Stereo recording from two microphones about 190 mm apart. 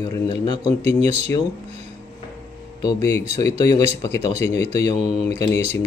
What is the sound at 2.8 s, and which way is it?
Speech, 15° left (ahead or behind).